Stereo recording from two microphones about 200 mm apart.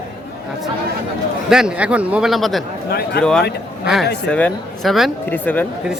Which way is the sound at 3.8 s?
Centre (ahead or behind).